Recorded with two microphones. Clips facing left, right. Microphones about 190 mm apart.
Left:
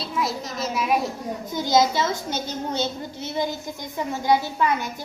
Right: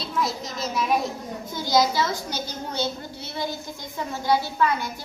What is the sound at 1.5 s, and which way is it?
A woman's voice, 20° left (ahead or behind).